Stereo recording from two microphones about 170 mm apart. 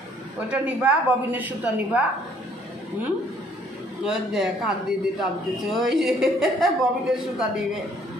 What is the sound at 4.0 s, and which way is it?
Speech, 5° right (ahead or behind).